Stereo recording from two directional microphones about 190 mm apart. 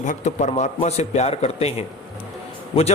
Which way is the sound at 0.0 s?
40° left (ahead or behind).